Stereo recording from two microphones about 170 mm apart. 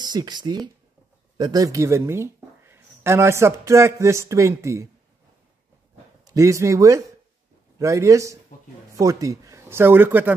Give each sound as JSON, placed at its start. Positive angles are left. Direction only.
{"t": 0.0, "sound": "speech", "side_deg": -25}
{"t": 6.2, "sound": "a man's voice", "side_deg": -20}